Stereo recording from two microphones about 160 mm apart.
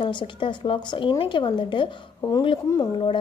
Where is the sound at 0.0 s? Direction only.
30° left (ahead or behind).